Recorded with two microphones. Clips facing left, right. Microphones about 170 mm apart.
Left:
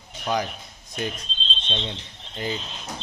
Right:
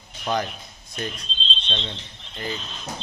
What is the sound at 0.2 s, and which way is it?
Speech, 10° left (ahead or behind).